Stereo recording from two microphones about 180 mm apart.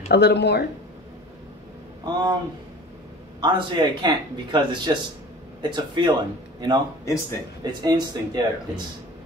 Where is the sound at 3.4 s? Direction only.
25° right (ahead or behind).